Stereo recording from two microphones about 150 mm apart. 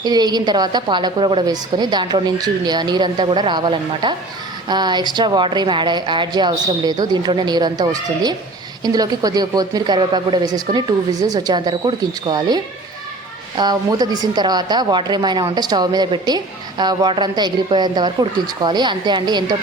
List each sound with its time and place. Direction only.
0.0 s a woman's voice: 25° right (ahead or behind)